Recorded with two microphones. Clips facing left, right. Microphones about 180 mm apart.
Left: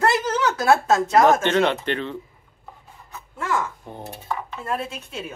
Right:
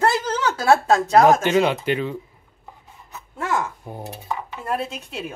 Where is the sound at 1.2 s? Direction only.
10° right (ahead or behind).